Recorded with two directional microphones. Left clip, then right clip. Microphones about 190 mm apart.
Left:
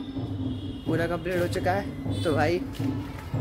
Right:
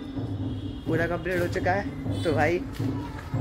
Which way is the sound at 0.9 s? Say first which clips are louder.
Right 1 dB; 10° left (ahead or behind).